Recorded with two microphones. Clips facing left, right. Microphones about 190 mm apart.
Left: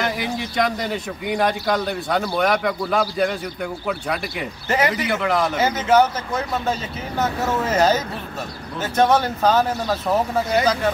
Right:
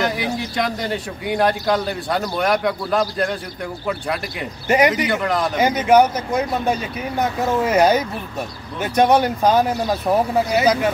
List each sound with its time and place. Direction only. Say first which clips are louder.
0.0 s a man's voice: right 2 dB; centre (ahead or behind)
4.6 s speech: right 5 dB; 15° right (ahead or behind)
5.0 s a man's voice: even; 5° left (ahead or behind)
5.6 s speech: right 4 dB; 15° right (ahead or behind)